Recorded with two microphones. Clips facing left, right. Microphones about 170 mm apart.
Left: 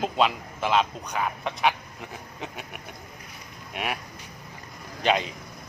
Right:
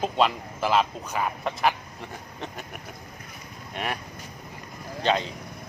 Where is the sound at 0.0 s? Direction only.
Centre (ahead or behind).